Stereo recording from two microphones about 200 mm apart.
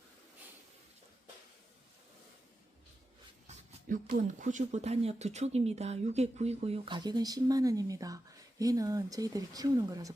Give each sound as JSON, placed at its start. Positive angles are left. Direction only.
{"t": 3.4, "sound": "speech", "side_deg": -40}